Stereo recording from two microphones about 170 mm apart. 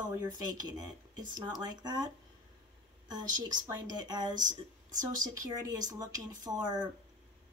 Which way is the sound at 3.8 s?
25° right (ahead or behind).